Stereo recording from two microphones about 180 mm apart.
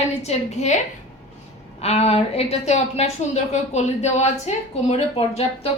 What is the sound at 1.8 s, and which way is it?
A woman's voice, 35° left (ahead or behind).